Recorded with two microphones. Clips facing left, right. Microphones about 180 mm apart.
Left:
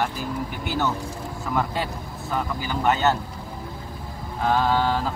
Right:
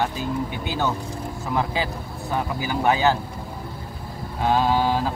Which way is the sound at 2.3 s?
10° right (ahead or behind).